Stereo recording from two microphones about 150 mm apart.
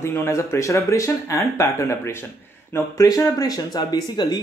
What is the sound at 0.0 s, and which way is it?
Speech, 20° left (ahead or behind).